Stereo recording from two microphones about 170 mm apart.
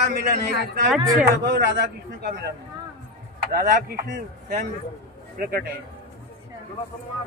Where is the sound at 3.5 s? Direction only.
55° right (ahead or behind).